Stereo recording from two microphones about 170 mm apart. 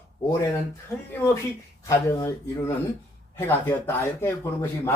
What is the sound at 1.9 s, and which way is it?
Speech, 20° left (ahead or behind).